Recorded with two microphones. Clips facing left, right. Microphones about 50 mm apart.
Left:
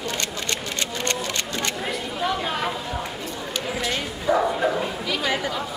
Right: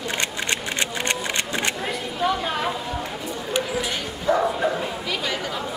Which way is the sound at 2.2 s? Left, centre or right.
Centre.